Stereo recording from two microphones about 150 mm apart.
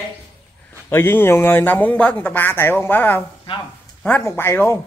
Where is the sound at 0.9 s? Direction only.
15° left (ahead or behind).